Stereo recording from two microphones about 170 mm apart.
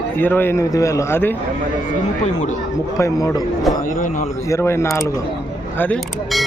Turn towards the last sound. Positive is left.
turn(degrees=10)  # may be behind; listen again after turning